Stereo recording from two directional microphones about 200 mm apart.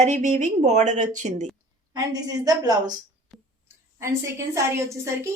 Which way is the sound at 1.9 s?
20° right (ahead or behind).